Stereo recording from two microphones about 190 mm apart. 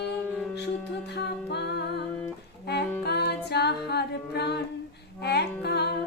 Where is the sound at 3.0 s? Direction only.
60° left (ahead or behind).